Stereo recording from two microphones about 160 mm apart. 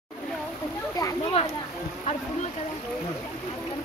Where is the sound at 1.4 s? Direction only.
40° left (ahead or behind).